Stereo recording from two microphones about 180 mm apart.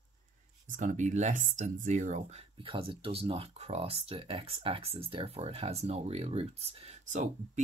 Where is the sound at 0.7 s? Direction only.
45° right (ahead or behind).